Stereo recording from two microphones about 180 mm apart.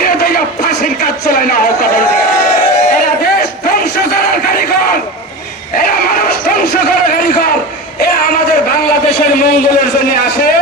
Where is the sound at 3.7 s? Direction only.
60° left (ahead or behind).